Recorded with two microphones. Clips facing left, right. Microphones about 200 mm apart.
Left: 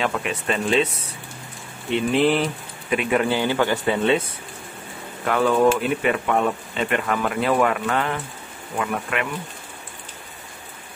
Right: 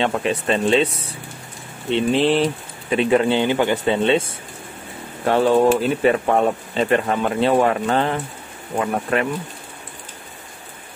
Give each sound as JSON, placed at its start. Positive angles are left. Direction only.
{"t": 0.0, "sound": "speech", "side_deg": -30}
{"t": 1.9, "sound": "speech", "side_deg": -30}
{"t": 5.2, "sound": "speech", "side_deg": -30}